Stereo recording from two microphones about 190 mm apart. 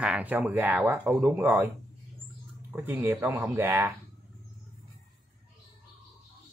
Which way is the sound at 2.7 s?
10° right (ahead or behind).